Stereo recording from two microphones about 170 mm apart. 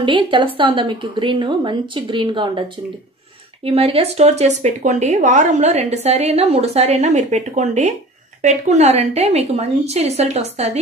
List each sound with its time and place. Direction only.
0.0 s a woman's voice: 30° right (ahead or behind)
3.6 s speech: 35° right (ahead or behind)